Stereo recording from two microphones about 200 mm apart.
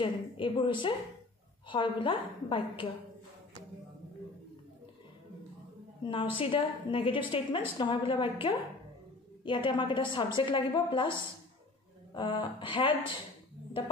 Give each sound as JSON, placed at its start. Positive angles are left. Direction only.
{"t": 0.0, "sound": "a woman's voice", "side_deg": 25}
{"t": 6.0, "sound": "a woman's voice", "side_deg": 25}